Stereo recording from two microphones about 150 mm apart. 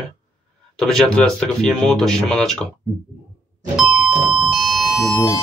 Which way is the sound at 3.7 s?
5° right (ahead or behind).